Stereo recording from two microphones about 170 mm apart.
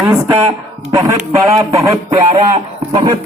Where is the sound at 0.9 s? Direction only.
20° right (ahead or behind).